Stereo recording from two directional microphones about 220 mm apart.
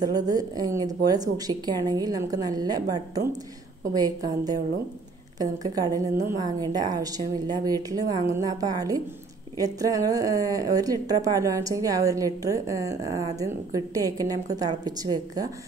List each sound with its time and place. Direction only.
0.0 s a woman's voice: 15° right (ahead or behind)